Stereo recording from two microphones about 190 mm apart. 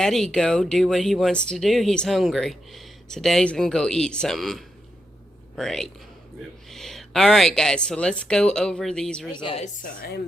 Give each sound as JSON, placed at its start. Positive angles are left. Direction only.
{"t": 0.0, "sound": "speech", "side_deg": 0}
{"t": 9.3, "sound": "speech", "side_deg": 25}
{"t": 9.8, "sound": "speech", "side_deg": 50}